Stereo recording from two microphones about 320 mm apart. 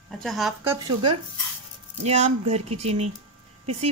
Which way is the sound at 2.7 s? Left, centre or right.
Right.